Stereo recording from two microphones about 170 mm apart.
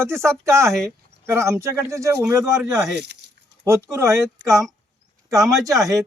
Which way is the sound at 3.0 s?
80° right.